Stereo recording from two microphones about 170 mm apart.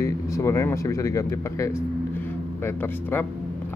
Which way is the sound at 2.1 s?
15° left (ahead or behind).